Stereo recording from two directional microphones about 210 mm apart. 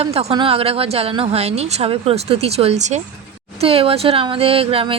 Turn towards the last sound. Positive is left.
turn(degrees=-25)  # may be behind; listen again after turning